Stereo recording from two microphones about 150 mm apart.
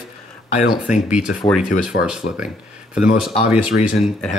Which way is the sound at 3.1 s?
5° right (ahead or behind).